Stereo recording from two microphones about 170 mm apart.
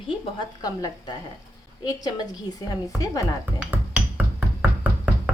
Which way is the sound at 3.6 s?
5° right (ahead or behind).